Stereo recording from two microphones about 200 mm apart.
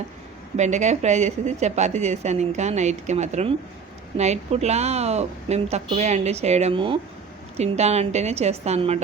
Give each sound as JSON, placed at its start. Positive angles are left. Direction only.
{"t": 0.5, "sound": "a woman's voice", "side_deg": -35}